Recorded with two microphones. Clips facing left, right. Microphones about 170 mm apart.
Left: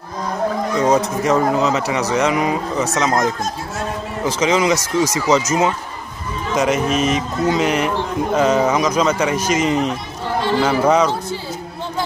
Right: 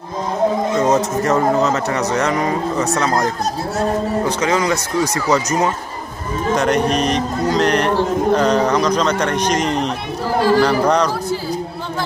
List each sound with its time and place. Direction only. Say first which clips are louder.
0.7 s speech: right 1 dB; centre (ahead or behind)
4.4 s speech: left 5 dB; 20° left (ahead or behind)
5.0 s speech: left 1 dB; centre (ahead or behind)
6.5 s speech: right 1 dB; centre (ahead or behind)